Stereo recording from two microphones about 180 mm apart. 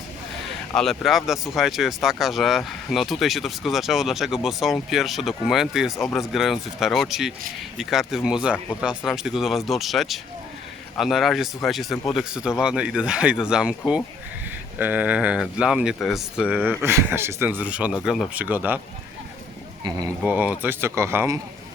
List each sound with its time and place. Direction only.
0.7 s speech: centre (ahead or behind)
19.8 s speech: 20° right (ahead or behind)
20.2 s speech: 5° right (ahead or behind)